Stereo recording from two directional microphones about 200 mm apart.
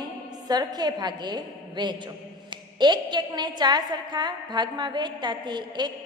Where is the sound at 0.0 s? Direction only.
20° right (ahead or behind).